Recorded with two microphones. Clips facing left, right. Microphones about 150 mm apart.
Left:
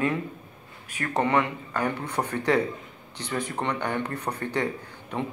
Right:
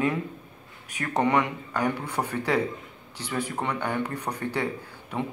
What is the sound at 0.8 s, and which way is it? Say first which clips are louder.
Speech: right 1 dB; 15° right (ahead or behind).